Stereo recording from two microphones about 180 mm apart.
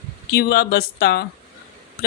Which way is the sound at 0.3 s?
60° left (ahead or behind).